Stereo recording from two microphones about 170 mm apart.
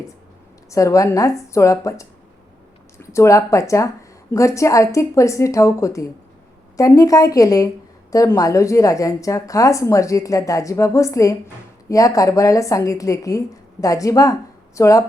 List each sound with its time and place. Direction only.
0.7 s a woman's voice: 20° left (ahead or behind)